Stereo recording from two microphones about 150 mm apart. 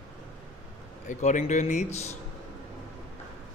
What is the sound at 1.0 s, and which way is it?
A man's voice, 55° left (ahead or behind).